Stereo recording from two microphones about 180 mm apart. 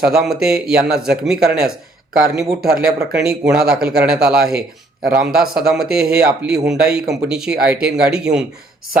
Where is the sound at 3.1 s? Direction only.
5° right (ahead or behind).